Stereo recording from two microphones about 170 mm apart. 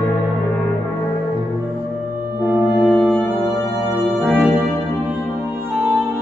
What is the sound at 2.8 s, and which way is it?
Music, 10° left (ahead or behind).